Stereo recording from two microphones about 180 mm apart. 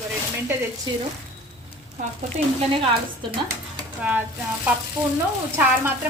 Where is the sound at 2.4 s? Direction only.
40° right (ahead or behind).